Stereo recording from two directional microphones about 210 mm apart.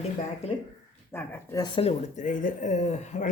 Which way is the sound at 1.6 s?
25° left (ahead or behind).